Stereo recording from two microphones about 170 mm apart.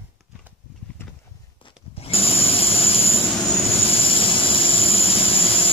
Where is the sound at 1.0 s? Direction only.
15° left (ahead or behind).